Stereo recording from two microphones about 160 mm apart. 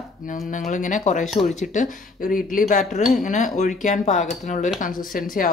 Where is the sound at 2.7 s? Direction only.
50° left (ahead or behind).